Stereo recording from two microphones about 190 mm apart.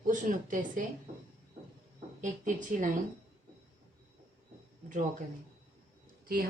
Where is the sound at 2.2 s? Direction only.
40° right (ahead or behind).